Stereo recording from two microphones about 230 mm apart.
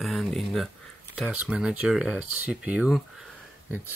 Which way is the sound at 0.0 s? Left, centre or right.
Centre.